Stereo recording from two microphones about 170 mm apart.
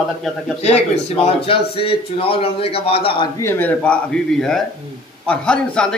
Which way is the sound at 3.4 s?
10° left (ahead or behind).